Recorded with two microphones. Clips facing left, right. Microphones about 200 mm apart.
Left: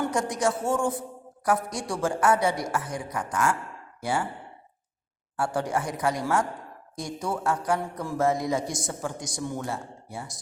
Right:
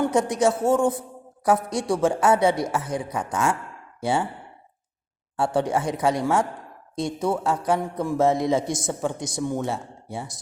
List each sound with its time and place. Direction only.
0.1 s a man's voice: 20° right (ahead or behind)
5.4 s a man's voice: 25° right (ahead or behind)